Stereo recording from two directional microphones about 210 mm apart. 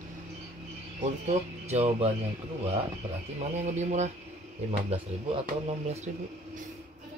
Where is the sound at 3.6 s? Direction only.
35° right (ahead or behind).